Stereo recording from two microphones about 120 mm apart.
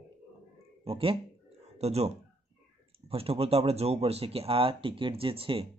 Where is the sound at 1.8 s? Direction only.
60° right (ahead or behind).